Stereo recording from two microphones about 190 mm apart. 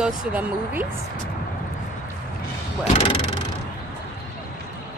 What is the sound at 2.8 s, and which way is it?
Speech, 30° left (ahead or behind).